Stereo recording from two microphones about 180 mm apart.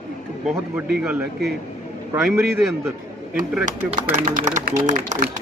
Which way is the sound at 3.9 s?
40° right (ahead or behind).